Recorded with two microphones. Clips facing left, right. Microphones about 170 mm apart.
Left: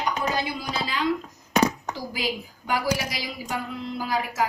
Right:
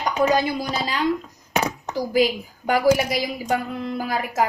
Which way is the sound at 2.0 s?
50° right (ahead or behind).